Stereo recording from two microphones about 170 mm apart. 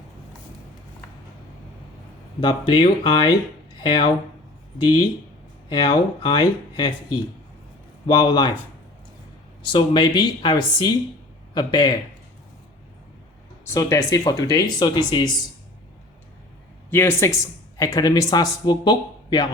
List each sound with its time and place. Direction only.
2.4 s speech: 30° left (ahead or behind)
8.0 s speech: 25° left (ahead or behind)
9.6 s speech: 30° left (ahead or behind)
13.7 s speech: 20° left (ahead or behind)
16.9 s speech: 15° left (ahead or behind)